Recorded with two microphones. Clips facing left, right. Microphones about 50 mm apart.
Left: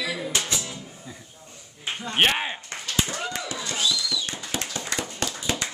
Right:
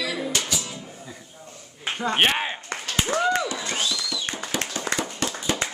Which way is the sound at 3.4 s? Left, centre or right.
Right.